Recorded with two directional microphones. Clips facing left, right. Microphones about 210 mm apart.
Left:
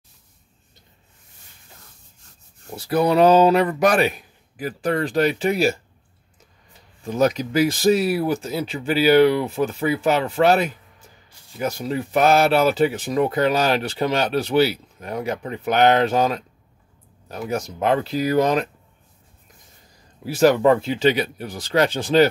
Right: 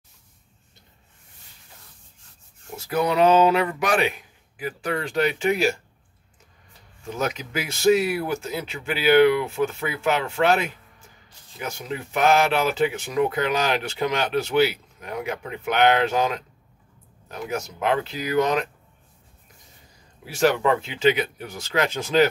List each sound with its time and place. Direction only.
2.7 s speech: 35° left (ahead or behind)
7.2 s speech: 40° left (ahead or behind)
17.5 s speech: 40° left (ahead or behind)
20.3 s speech: 40° left (ahead or behind)